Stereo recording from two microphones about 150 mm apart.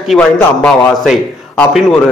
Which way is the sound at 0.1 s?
5° left (ahead or behind).